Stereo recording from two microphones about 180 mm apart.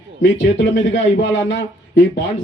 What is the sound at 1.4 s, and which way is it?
Speech, 80° left.